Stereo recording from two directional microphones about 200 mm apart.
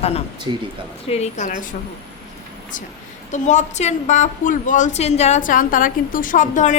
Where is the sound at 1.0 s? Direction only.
30° left (ahead or behind).